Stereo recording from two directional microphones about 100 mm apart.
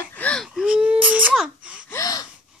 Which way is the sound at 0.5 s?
5° right (ahead or behind).